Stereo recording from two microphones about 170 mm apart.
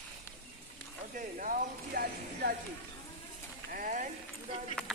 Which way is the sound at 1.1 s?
50° right (ahead or behind).